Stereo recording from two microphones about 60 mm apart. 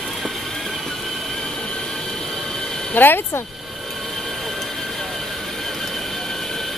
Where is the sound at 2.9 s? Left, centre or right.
Left.